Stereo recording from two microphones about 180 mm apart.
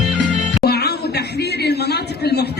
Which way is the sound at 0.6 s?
65° left (ahead or behind).